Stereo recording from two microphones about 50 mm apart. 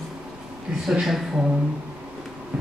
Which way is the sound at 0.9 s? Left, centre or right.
Centre.